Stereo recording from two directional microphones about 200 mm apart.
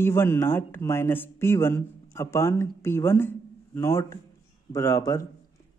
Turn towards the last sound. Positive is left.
turn(degrees=15)  # may be behind; listen again after turning